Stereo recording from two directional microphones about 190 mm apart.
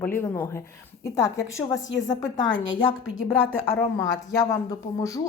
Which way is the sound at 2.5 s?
85° left.